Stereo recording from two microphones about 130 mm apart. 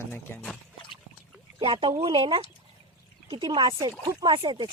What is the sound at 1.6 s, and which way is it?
Speech, 45° right (ahead or behind).